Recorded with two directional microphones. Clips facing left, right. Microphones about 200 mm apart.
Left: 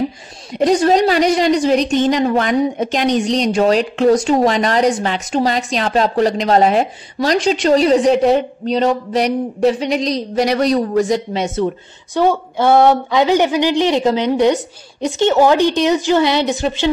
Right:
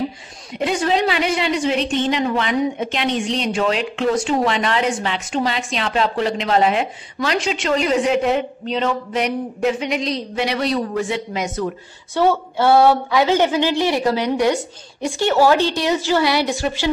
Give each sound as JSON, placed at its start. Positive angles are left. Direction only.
{"t": 0.6, "sound": "a woman's voice", "side_deg": 40}
{"t": 11.6, "sound": "a woman's voice", "side_deg": 15}